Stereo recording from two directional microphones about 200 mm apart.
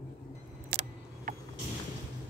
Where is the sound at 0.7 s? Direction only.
55° right (ahead or behind).